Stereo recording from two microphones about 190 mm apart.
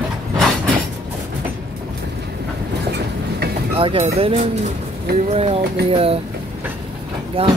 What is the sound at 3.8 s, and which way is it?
Speech, 30° right (ahead or behind).